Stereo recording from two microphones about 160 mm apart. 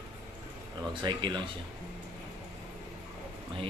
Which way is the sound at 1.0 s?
25° right (ahead or behind).